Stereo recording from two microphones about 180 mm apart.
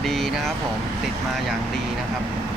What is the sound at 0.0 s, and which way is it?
Vehicle, centre (ahead or behind).